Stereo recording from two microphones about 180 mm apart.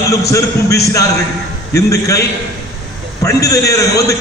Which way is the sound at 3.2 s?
20° left (ahead or behind).